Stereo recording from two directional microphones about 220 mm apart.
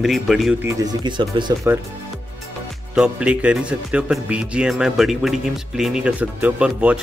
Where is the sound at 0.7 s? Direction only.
20° right (ahead or behind).